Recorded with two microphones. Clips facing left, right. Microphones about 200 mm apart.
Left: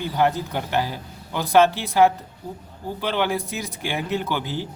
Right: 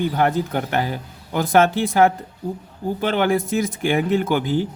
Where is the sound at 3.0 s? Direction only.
50° right (ahead or behind).